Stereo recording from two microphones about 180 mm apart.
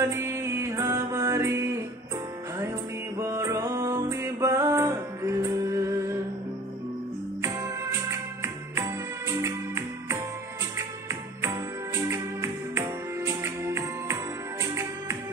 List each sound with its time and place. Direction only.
0.0 s music: 15° right (ahead or behind)
3.2 s music: 15° right (ahead or behind)
7.4 s music: 15° right (ahead or behind)